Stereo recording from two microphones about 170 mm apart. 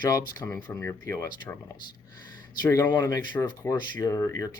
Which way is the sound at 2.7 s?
15° left (ahead or behind).